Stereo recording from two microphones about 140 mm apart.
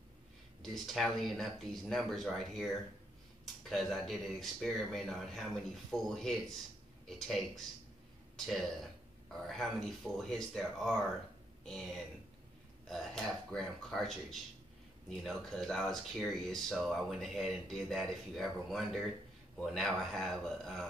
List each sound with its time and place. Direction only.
0.6 s speech: centre (ahead or behind)